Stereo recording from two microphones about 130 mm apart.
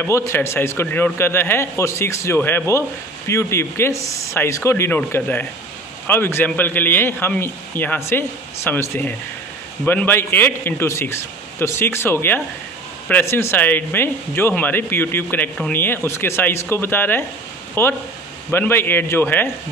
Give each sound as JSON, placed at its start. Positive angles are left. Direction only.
{"t": 0.0, "sound": "a man's voice", "side_deg": 20}